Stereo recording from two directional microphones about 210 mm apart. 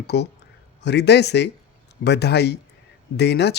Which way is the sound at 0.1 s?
50° left (ahead or behind).